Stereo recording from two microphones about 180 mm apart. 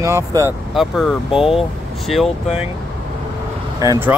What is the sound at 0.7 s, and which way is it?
Speech, centre (ahead or behind).